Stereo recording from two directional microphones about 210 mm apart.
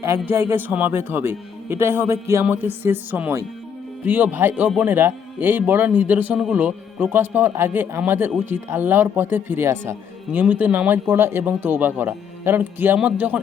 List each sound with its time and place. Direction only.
0.2 s a man's voice: 10° right (ahead or behind)